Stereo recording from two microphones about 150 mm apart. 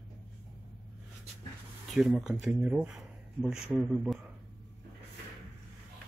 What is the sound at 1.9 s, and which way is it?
Speech, 5° right (ahead or behind).